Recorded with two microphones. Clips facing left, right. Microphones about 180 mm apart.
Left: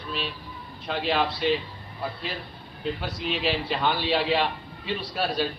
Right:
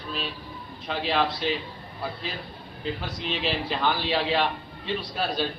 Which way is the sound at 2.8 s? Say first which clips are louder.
Left 2 dB; centre (ahead or behind).